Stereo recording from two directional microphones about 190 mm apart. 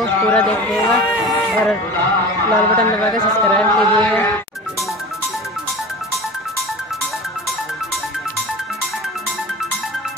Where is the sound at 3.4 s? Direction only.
5° left (ahead or behind).